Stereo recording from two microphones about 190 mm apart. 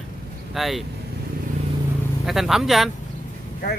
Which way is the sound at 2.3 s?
Centre (ahead or behind).